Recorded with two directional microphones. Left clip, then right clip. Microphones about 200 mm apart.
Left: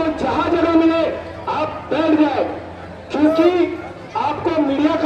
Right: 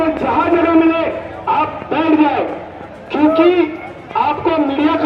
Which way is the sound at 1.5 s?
55° left (ahead or behind).